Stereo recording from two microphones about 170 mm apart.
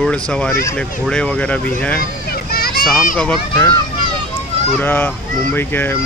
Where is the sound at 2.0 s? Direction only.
60° left (ahead or behind).